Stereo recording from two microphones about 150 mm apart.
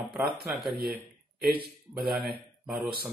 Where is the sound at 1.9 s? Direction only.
Centre (ahead or behind).